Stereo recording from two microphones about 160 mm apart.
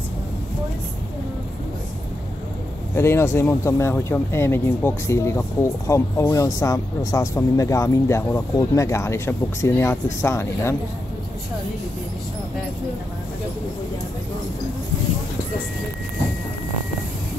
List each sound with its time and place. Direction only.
2.9 s speech: 15° left (ahead or behind)